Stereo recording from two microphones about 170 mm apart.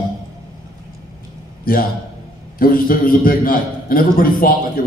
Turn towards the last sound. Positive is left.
turn(degrees=55)  # may be behind; listen again after turning